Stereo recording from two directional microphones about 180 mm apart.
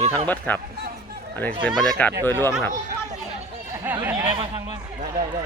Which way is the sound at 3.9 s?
10° right (ahead or behind).